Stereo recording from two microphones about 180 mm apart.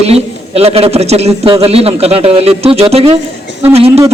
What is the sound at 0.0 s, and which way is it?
A man's voice, 35° right (ahead or behind).